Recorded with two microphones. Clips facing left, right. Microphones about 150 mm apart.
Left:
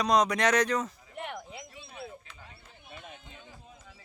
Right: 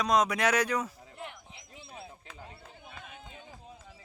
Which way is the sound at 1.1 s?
75° left (ahead or behind).